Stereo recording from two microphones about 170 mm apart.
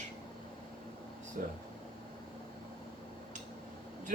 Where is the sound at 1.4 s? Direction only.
50° right (ahead or behind).